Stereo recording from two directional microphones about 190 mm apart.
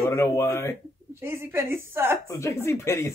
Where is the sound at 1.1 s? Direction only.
15° right (ahead or behind).